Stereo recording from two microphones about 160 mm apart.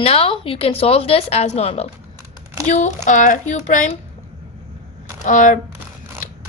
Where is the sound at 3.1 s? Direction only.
50° left (ahead or behind).